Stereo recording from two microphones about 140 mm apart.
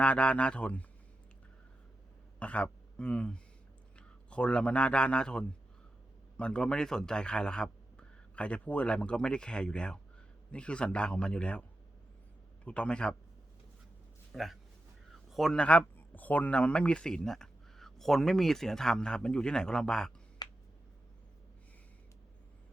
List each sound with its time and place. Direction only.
0.0 s speech: 10° left (ahead or behind)
2.4 s a man's voice: 10° left (ahead or behind)
12.6 s speech: 10° left (ahead or behind)
14.3 s speech: centre (ahead or behind)
20.4 s a sound: 30° left (ahead or behind)